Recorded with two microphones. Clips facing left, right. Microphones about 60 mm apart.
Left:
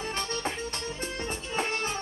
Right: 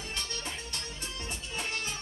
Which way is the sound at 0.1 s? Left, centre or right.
Left.